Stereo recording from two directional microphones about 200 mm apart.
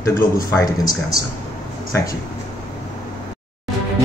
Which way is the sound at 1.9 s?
15° left (ahead or behind).